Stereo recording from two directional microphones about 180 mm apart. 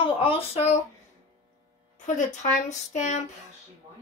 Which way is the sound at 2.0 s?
40° left (ahead or behind).